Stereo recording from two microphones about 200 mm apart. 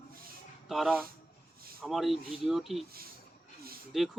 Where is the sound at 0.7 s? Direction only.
Centre (ahead or behind).